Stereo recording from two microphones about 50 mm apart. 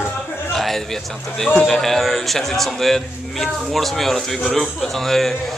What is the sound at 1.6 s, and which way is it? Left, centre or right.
A man's voice, centre.